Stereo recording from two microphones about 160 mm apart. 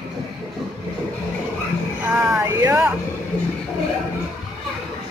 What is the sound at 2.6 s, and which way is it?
Speech, 20° right (ahead or behind).